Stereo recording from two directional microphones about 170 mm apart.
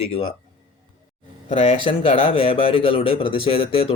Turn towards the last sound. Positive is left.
turn(degrees=35)  # may be behind; listen again after turning